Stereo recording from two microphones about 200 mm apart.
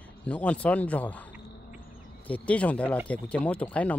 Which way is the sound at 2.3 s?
5° left (ahead or behind).